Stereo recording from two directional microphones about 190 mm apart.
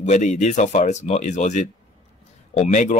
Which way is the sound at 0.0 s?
40° left (ahead or behind).